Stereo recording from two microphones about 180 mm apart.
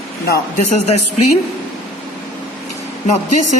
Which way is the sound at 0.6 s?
40° left (ahead or behind).